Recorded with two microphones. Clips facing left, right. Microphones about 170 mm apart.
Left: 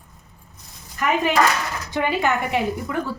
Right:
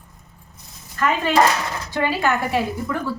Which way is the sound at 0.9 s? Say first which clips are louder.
Right 1 dB; 15° left (ahead or behind).